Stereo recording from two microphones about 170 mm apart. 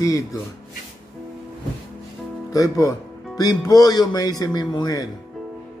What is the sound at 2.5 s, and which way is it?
Speech, 20° left (ahead or behind).